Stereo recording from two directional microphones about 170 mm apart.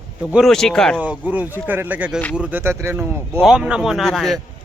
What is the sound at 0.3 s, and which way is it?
Speech, centre (ahead or behind).